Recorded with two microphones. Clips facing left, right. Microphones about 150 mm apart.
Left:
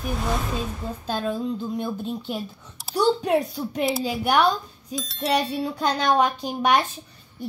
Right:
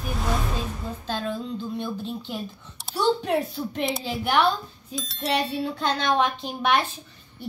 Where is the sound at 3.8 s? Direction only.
5° left (ahead or behind).